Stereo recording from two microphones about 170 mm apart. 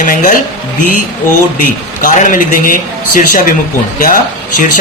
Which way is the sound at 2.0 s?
50° left (ahead or behind).